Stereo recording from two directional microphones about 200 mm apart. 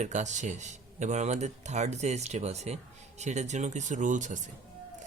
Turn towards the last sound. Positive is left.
turn(degrees=-40)  # may be behind; listen again after turning